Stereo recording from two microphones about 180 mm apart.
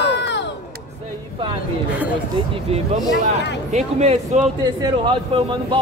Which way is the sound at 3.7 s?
40° right (ahead or behind).